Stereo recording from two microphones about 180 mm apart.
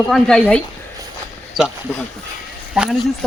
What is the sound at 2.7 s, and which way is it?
Speech, centre (ahead or behind).